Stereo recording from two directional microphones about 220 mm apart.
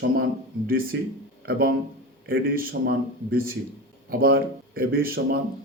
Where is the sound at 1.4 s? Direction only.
45° right (ahead or behind).